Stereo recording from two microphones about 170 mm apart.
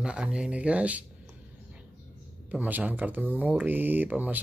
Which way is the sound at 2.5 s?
10° right (ahead or behind).